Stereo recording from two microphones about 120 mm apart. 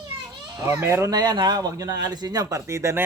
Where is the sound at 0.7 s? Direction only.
20° right (ahead or behind).